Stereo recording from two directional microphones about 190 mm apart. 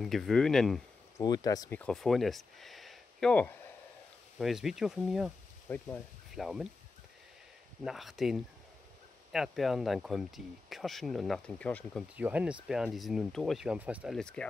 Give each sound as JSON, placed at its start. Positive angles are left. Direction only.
{"t": 0.0, "sound": "speech", "side_deg": 0}
{"t": 1.1, "sound": "speech", "side_deg": 20}
{"t": 1.8, "sound": "speech", "side_deg": 0}
{"t": 5.7, "sound": "speech", "side_deg": 10}
{"t": 6.3, "sound": "speech", "side_deg": 0}
{"t": 7.8, "sound": "speech", "side_deg": 0}
{"t": 12.2, "sound": "speech", "side_deg": -5}